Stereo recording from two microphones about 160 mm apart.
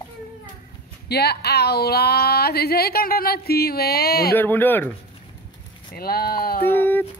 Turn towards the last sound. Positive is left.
turn(degrees=10)  # may be behind; listen again after turning